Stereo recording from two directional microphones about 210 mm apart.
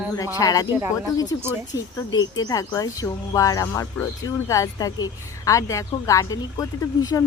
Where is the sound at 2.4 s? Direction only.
15° left (ahead or behind).